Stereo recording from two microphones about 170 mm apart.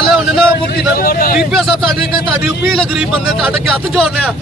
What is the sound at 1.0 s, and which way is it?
Speech, 60° left (ahead or behind).